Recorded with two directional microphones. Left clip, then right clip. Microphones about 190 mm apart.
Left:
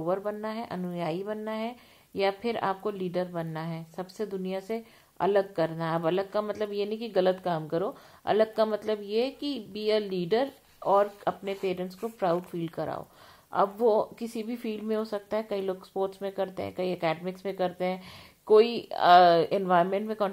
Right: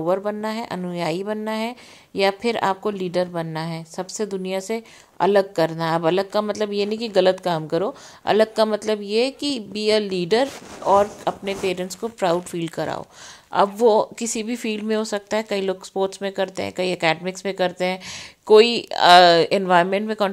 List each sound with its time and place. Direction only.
0.0 s a woman's voice: 35° right (ahead or behind)